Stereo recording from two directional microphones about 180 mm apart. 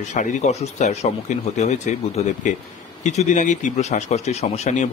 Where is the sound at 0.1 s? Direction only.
40° left (ahead or behind).